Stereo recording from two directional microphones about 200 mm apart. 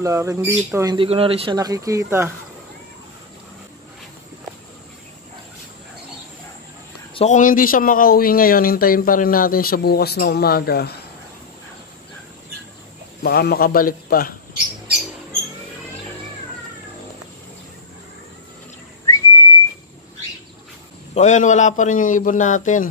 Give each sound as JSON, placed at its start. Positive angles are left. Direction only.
{"t": 0.0, "sound": "speech", "side_deg": -15}
{"t": 0.9, "sound": "speech", "side_deg": -30}
{"t": 7.2, "sound": "speech", "side_deg": 40}
{"t": 13.2, "sound": "speech", "side_deg": 50}
{"t": 19.1, "sound": "whistling", "side_deg": 15}
{"t": 21.1, "sound": "a man's voice", "side_deg": 35}